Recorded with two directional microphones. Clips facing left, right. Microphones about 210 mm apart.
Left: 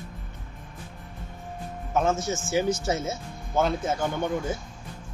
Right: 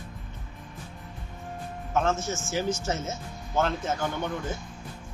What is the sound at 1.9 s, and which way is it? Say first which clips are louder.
Speech: left 2 dB; 10° left (ahead or behind).